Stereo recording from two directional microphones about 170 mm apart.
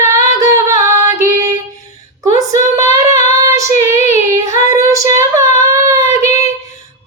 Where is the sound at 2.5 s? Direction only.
45° left (ahead or behind).